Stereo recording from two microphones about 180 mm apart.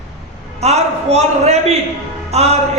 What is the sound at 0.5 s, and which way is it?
Music, 35° right (ahead or behind).